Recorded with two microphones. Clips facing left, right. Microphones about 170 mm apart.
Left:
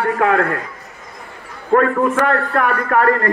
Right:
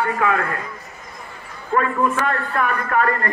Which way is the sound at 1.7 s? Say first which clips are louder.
Left 5 dB; 65° left (ahead or behind).